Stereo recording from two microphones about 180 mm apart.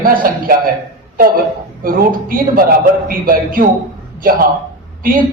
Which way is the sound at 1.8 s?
50° right (ahead or behind).